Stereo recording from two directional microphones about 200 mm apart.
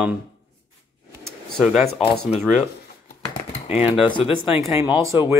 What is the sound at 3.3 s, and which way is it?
Typing, 30° left (ahead or behind).